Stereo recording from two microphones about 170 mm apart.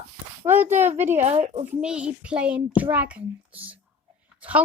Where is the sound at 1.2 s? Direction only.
40° right (ahead or behind).